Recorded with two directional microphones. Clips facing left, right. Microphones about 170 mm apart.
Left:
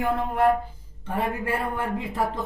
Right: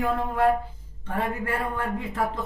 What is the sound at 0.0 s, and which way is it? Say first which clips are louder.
A man's voice: left 1 dB; 15° left (ahead or behind).